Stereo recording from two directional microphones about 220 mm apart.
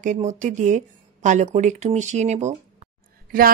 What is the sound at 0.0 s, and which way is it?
Speech, 35° right (ahead or behind).